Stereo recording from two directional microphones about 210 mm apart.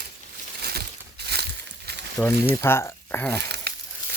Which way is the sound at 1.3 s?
50° right (ahead or behind).